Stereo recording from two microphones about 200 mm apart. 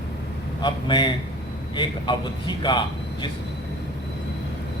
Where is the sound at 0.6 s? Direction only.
20° left (ahead or behind).